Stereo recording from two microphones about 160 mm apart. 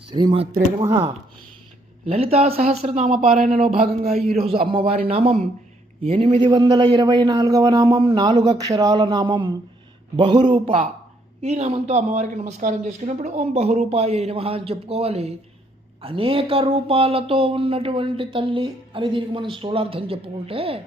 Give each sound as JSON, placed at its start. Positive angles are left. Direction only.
{"t": 0.1, "sound": "a man's voice", "side_deg": -30}
{"t": 3.2, "sound": "speech", "side_deg": -60}
{"t": 4.0, "sound": "a man's voice", "side_deg": -40}
{"t": 11.4, "sound": "speech", "side_deg": -45}